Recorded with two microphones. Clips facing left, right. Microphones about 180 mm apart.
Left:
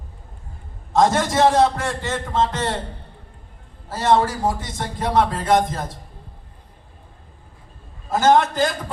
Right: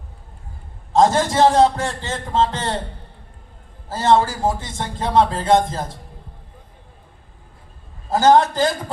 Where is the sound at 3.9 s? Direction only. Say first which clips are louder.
Right 1 dB; 30° right (ahead or behind).